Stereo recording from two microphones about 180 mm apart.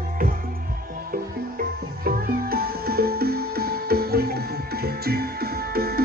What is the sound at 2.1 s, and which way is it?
Music, 55° right (ahead or behind).